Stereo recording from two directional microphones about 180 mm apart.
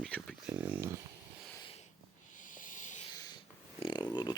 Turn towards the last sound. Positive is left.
turn(degrees=25)  # may be behind; listen again after turning